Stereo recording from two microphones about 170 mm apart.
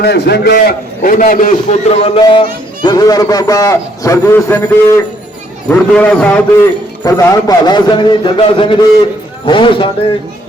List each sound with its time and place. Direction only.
0.0 s a man's voice: 75° left (ahead or behind); by 2.4 s 30° left (ahead or behind)
2.8 s a man's voice: 20° left (ahead or behind); by 6.4 s 5° left (ahead or behind)
7.0 s a man's voice: 15° left (ahead or behind)